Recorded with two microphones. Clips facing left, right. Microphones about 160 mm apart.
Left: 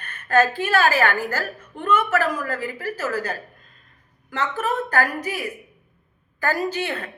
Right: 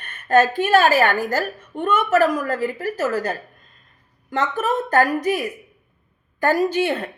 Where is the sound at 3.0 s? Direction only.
40° right (ahead or behind).